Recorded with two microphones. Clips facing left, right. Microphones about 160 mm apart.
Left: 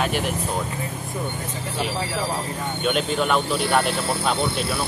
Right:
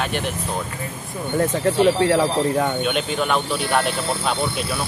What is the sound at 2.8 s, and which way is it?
Speech, centre (ahead or behind).